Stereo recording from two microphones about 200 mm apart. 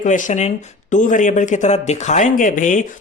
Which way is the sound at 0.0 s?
40° left (ahead or behind).